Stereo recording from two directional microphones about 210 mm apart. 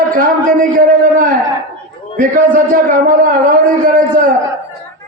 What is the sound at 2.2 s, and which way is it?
A man's voice, 40° right (ahead or behind).